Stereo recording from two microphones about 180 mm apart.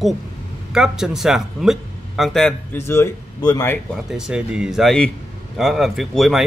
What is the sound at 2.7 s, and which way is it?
Speech, 15° left (ahead or behind).